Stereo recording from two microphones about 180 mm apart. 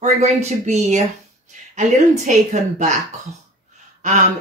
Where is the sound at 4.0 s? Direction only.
40° right (ahead or behind).